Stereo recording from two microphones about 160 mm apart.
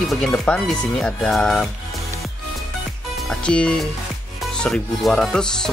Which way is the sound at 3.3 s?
5° left (ahead or behind).